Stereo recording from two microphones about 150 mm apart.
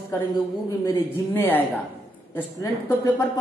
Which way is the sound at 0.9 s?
15° left (ahead or behind).